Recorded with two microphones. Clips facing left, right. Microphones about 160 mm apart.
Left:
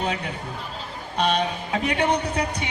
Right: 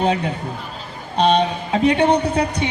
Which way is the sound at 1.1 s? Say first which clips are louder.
Right 7 dB; 30° right (ahead or behind).